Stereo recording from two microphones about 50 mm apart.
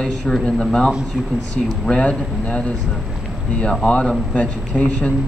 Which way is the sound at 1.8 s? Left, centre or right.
Left.